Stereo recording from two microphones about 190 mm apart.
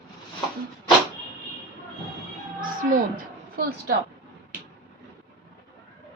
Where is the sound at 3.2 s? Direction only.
50° right (ahead or behind).